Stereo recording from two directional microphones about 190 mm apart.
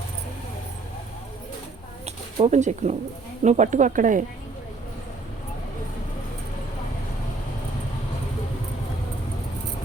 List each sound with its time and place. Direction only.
2.0 s speech: 35° right (ahead or behind)